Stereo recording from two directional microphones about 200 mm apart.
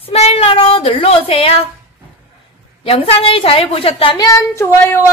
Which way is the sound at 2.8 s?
30° left (ahead or behind).